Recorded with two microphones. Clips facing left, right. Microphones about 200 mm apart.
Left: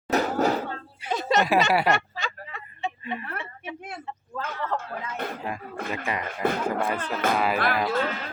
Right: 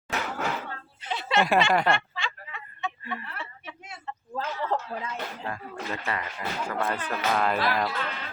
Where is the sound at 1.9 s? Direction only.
40° left (ahead or behind).